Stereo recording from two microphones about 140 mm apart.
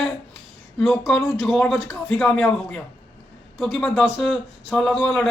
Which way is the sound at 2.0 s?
Centre (ahead or behind).